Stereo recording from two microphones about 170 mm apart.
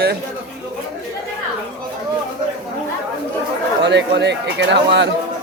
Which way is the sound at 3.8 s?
90° right.